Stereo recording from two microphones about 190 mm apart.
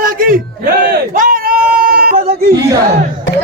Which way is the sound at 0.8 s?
50° right (ahead or behind).